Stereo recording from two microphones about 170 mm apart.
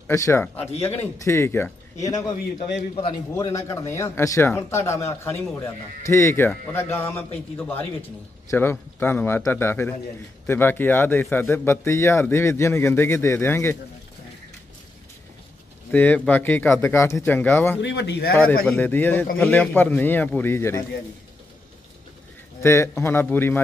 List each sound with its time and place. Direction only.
0.0 s a man's voice: 15° left (ahead or behind)
3.3 s a man's voice: 20° left (ahead or behind)
15.9 s a man's voice: 10° left (ahead or behind)
17.8 s speech: 90° left
18.7 s a man's voice: 10° left (ahead or behind)
22.6 s a man's voice: 15° left (ahead or behind)